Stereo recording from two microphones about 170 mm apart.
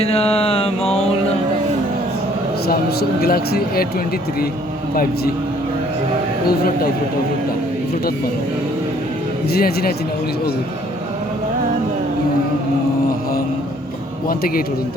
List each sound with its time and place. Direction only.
0.0 s mantra: 35° left (ahead or behind)
2.6 s speech: 65° left (ahead or behind)
9.5 s speech: 65° left (ahead or behind)
14.3 s speech: 60° left (ahead or behind)